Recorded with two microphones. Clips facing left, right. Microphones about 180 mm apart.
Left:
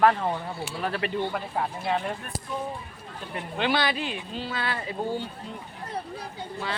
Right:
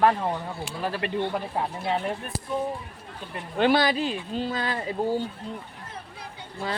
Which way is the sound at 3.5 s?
45° right (ahead or behind).